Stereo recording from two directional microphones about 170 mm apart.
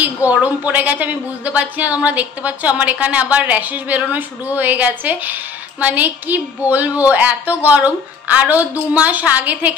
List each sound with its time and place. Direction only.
0.0 s a woman's voice: 10° right (ahead or behind)